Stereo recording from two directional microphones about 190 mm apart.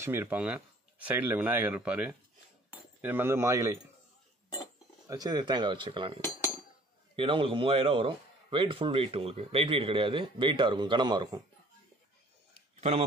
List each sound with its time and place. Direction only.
0.0 s speech: 10° right (ahead or behind)
5.0 s a man's voice: 20° right (ahead or behind)
6.2 s cutlery: 15° left (ahead or behind)
7.2 s a man's voice: 25° right (ahead or behind)